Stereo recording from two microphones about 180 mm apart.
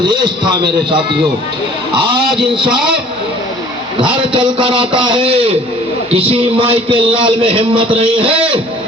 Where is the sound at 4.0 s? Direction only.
25° right (ahead or behind).